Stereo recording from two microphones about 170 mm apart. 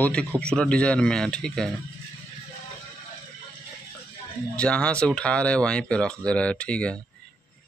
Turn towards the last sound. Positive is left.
turn(degrees=5)  # may be behind; listen again after turning